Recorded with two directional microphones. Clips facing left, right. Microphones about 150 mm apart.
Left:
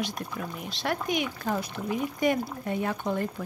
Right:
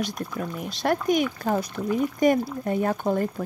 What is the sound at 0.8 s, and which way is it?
Speech, 45° right (ahead or behind).